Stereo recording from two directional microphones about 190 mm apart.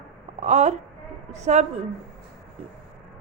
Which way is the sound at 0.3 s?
40° right (ahead or behind).